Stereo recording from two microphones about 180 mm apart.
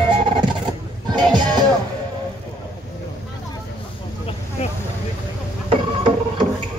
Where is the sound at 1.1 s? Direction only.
25° right (ahead or behind).